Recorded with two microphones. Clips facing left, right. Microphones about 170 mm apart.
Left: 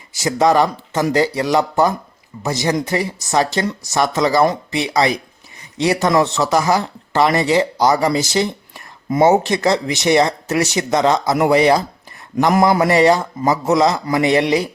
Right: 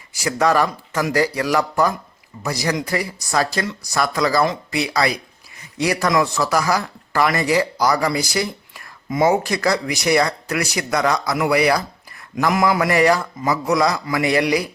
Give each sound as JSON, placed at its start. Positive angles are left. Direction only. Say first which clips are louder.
{"t": 0.2, "sound": "speech", "louder": "left 3 dB", "side_deg": 20}
{"t": 12.9, "sound": "speech", "louder": "left 3 dB", "side_deg": 25}